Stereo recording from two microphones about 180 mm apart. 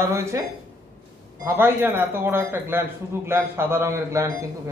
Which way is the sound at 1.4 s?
10° right (ahead or behind).